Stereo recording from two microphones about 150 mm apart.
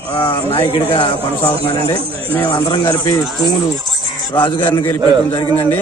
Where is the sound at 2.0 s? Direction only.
40° right (ahead or behind).